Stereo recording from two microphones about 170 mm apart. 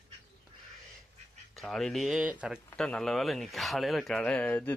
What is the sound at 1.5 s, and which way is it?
Speech, centre (ahead or behind).